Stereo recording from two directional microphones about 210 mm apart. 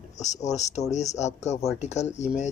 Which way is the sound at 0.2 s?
35° left (ahead or behind).